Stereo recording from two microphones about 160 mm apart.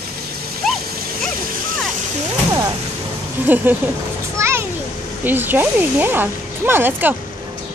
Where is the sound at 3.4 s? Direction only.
10° right (ahead or behind).